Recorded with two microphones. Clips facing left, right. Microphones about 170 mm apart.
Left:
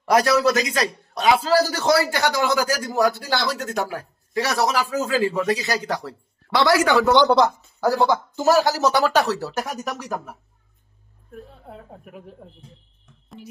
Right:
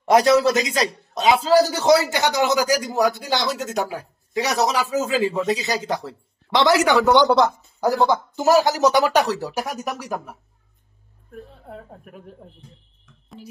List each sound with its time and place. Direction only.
0.0 s a man's voice: 25° right (ahead or behind)
7.3 s a woman's voice: centre (ahead or behind)
7.8 s speech: 20° right (ahead or behind)
11.7 s a woman's voice: 5° left (ahead or behind)
13.4 s speech: 35° right (ahead or behind)